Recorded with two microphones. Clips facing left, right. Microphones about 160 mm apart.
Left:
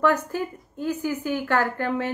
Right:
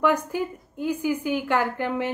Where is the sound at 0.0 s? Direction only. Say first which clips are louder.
Even; 15° right (ahead or behind).